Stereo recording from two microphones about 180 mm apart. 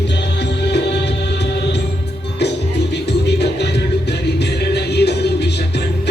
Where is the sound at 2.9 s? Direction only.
70° left (ahead or behind).